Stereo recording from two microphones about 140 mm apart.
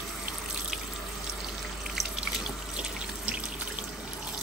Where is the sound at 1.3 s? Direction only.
Centre (ahead or behind).